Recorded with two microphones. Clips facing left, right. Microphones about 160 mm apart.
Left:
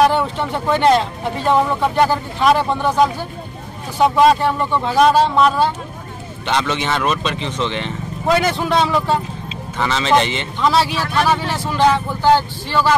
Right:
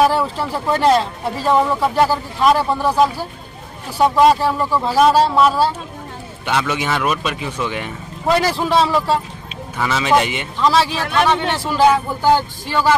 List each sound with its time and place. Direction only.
0.0 s speech: 5° right (ahead or behind)
10.6 s speech: centre (ahead or behind)